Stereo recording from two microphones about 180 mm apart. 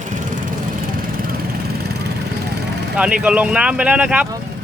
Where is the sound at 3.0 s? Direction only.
5° right (ahead or behind).